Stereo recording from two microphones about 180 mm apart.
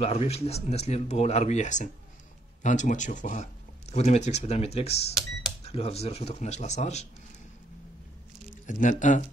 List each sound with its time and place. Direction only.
0.0 s speech: 35° left (ahead or behind)
8.6 s speech: 45° left (ahead or behind)